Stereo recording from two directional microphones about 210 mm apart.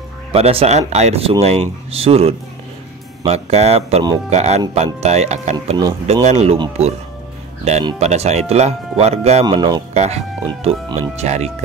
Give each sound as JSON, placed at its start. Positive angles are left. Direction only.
{"t": 0.3, "sound": "speech", "side_deg": -25}
{"t": 8.0, "sound": "speech", "side_deg": -30}
{"t": 9.9, "sound": "speech", "side_deg": -30}